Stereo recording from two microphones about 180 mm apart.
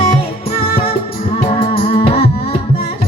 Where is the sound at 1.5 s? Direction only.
30° left (ahead or behind).